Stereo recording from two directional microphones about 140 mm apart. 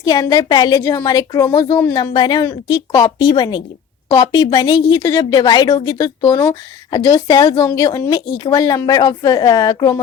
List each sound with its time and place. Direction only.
0.0 s a woman's voice: 30° left (ahead or behind)